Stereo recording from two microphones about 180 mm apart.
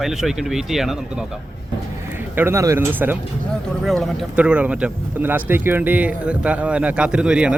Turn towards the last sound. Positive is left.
turn(degrees=-5)  # may be behind; listen again after turning